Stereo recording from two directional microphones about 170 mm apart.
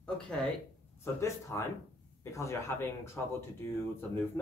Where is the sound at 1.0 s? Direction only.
15° left (ahead or behind).